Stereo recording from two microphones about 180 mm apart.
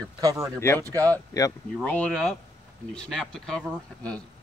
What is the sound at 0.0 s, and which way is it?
Speech, 20° right (ahead or behind).